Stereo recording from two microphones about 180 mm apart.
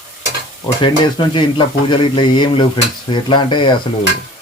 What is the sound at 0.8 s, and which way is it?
Speech, 25° left (ahead or behind).